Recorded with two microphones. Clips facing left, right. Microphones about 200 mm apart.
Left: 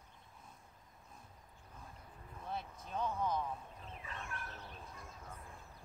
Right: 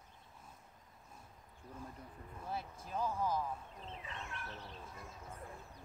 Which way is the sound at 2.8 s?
5° right (ahead or behind).